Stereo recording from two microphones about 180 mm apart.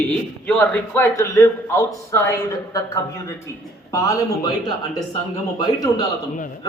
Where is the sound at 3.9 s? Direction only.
20° left (ahead or behind).